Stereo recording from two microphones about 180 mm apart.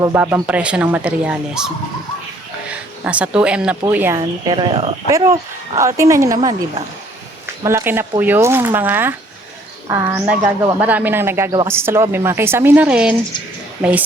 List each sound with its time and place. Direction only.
0.0 s speech: 10° right (ahead or behind)
4.2 s speech: 25° right (ahead or behind); by 13.1 s 5° right (ahead or behind)